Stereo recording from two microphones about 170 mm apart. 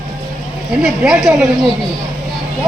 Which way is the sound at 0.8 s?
Centre (ahead or behind).